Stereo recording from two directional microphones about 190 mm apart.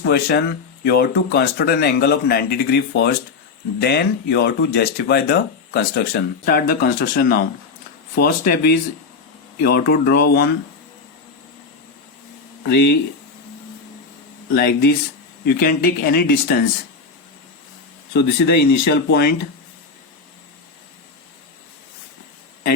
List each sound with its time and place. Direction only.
0.0 s speech: 60° left (ahead or behind)
12.6 s speech: 55° left (ahead or behind)
14.5 s speech: 55° left (ahead or behind)
18.1 s speech: 60° left (ahead or behind)